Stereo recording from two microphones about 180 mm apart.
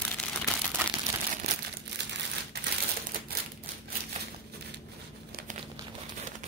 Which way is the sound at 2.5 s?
65° right (ahead or behind).